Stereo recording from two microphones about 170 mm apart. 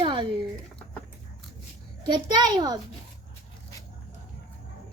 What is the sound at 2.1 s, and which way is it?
Speech, 25° right (ahead or behind).